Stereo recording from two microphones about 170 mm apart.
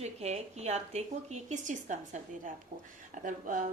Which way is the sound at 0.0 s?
40° right (ahead or behind).